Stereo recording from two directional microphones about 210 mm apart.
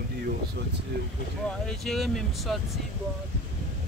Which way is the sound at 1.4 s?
5° left (ahead or behind).